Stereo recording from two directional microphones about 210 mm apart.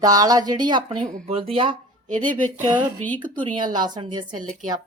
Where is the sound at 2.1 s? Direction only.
40° right (ahead or behind).